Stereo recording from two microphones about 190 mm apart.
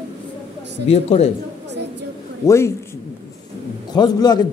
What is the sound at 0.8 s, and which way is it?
Speech, 30° left (ahead or behind).